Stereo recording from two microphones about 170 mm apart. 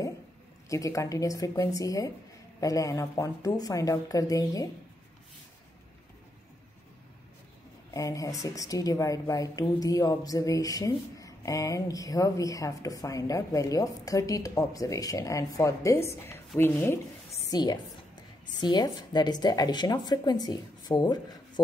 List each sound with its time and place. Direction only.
0.7 s a woman's voice: 20° left (ahead or behind)
7.9 s a woman's voice: 20° left (ahead or behind)
17.5 s a woman's voice: 25° left (ahead or behind)